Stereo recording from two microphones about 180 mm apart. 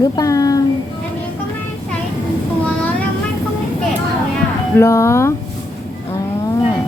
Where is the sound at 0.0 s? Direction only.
20° left (ahead or behind).